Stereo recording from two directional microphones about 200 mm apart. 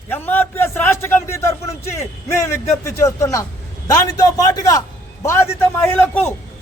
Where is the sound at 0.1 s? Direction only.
10° left (ahead or behind).